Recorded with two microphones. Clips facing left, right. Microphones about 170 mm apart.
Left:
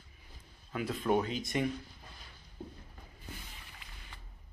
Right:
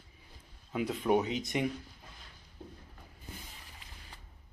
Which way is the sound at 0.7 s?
15° right (ahead or behind).